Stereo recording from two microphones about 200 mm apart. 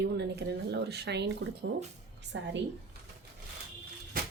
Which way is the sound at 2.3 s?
70° right (ahead or behind).